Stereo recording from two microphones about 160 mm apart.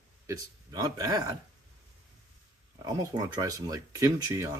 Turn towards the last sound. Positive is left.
turn(degrees=-20)  # may be behind; listen again after turning